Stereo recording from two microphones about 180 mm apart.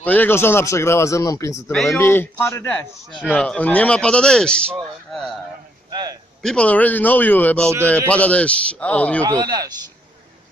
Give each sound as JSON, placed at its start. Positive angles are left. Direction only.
{"t": 0.0, "sound": "speech", "side_deg": 10}
{"t": 1.7, "sound": "speech", "side_deg": 5}
{"t": 5.9, "sound": "a sound", "side_deg": -25}
{"t": 6.4, "sound": "speech", "side_deg": 5}
{"t": 9.2, "sound": "a man's voice", "side_deg": -20}